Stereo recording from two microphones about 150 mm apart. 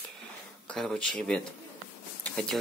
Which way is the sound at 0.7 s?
5° left (ahead or behind).